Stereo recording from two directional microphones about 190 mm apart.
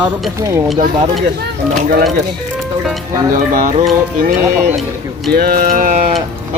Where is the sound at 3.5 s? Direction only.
45° right (ahead or behind).